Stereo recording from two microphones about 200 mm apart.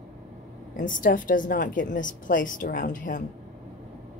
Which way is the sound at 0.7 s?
40° left (ahead or behind).